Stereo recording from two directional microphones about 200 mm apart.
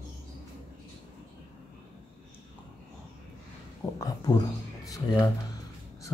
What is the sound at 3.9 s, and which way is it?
Speech, 20° left (ahead or behind).